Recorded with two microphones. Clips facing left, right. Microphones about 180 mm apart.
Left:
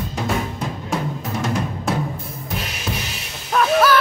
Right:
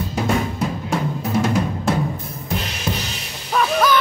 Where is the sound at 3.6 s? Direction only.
5° left (ahead or behind).